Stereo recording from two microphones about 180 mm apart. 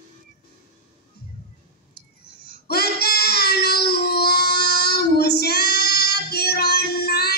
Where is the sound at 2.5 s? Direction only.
60° left (ahead or behind).